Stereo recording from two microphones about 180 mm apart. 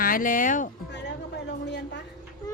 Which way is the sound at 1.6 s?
70° left (ahead or behind).